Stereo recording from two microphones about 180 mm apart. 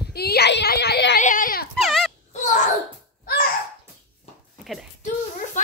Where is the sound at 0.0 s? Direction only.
60° left (ahead or behind).